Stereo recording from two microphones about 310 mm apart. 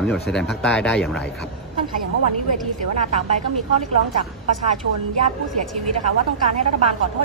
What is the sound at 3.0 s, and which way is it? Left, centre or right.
Speech, right.